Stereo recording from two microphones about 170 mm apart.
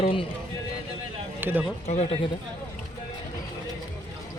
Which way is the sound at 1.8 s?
40° left (ahead or behind).